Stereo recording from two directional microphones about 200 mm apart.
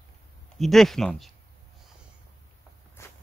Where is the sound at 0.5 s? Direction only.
Centre (ahead or behind).